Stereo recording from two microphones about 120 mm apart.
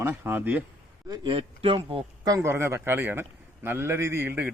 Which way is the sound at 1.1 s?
45° right (ahead or behind).